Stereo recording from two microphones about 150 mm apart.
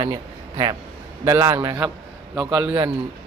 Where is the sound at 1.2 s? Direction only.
20° right (ahead or behind).